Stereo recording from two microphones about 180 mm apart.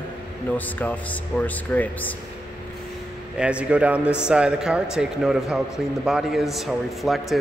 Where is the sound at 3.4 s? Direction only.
5° right (ahead or behind).